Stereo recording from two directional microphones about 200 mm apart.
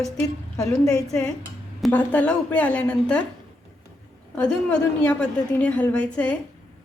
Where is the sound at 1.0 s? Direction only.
5° left (ahead or behind).